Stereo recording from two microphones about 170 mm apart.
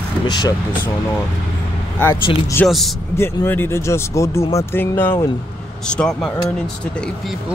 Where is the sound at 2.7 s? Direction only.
Centre (ahead or behind).